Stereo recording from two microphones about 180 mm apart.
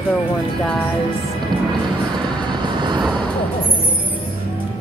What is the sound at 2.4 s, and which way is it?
Vehicle, 25° right (ahead or behind).